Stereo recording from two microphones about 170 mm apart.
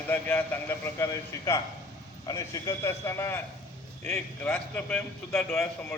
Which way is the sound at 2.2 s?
20° left (ahead or behind).